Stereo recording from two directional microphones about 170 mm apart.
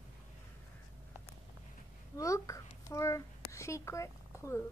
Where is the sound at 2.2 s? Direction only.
20° left (ahead or behind).